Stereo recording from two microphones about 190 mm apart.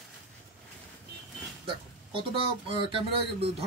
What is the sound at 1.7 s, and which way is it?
Speech, 30° right (ahead or behind).